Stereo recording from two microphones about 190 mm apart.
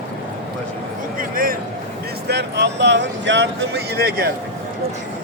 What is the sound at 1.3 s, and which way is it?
Speech, 50° right (ahead or behind).